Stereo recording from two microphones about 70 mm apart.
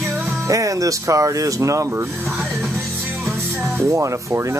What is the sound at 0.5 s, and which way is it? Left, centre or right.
Speech, right.